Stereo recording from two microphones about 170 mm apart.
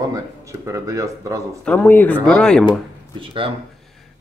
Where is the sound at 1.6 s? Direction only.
10° left (ahead or behind).